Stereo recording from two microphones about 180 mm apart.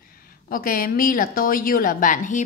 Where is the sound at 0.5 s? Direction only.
50° left (ahead or behind).